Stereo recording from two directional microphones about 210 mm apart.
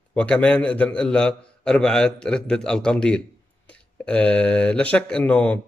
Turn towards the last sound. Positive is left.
turn(degrees=5)  # may be behind; listen again after turning